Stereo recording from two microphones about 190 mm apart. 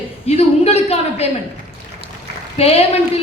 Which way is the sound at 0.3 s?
35° left (ahead or behind).